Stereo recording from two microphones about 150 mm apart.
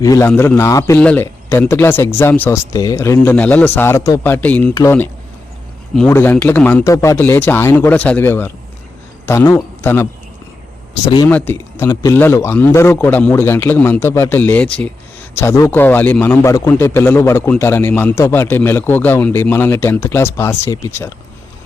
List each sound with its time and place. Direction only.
0.0 s speech: 25° left (ahead or behind)
1.0 s speech: 10° left (ahead or behind)
4.7 s speech: 25° left (ahead or behind)
6.1 s speech: 15° left (ahead or behind)
6.8 s a man's voice: 20° left (ahead or behind)
11.0 s speech: 30° left (ahead or behind)
11.3 s speech: 10° left (ahead or behind)